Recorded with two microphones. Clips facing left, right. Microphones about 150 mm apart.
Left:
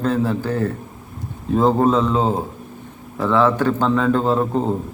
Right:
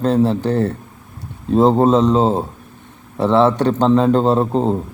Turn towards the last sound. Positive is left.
turn(degrees=-20)  # may be behind; listen again after turning